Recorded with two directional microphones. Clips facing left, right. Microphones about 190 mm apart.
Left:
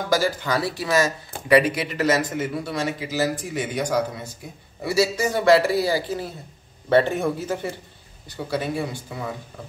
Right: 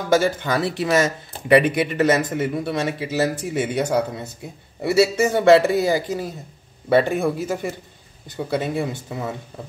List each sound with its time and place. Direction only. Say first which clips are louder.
0.1 s speech: right 4 dB; 25° right (ahead or behind)
8.3 s speech: right 3 dB; 20° right (ahead or behind)